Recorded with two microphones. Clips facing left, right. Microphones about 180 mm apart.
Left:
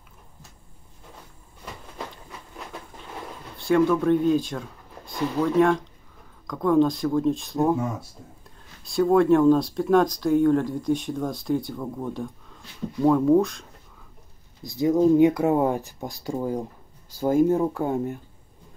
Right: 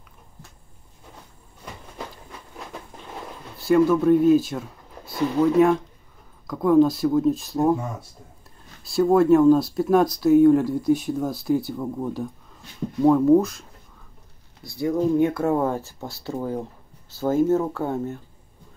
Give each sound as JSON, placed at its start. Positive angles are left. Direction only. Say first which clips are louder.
{"t": 3.5, "sound": "speech", "louder": "right 2 dB", "side_deg": -5}
{"t": 8.8, "sound": "speech", "louder": "right 1 dB", "side_deg": 0}
{"t": 14.6, "sound": "speech", "louder": "left 3 dB", "side_deg": 20}